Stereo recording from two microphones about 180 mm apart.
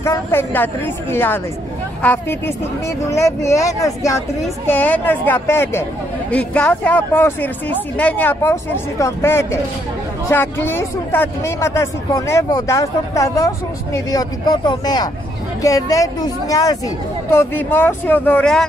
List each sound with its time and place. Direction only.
0.0 s speech: 15° left (ahead or behind)